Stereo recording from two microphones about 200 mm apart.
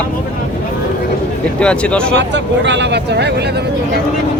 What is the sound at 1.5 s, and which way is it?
Speech, 5° left (ahead or behind).